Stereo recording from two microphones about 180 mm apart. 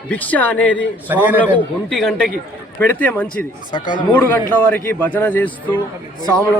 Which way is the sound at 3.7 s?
25° left (ahead or behind).